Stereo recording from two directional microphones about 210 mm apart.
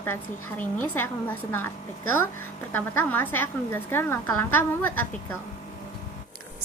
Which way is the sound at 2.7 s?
10° left (ahead or behind).